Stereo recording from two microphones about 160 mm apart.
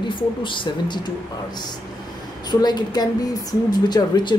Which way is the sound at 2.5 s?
25° left (ahead or behind).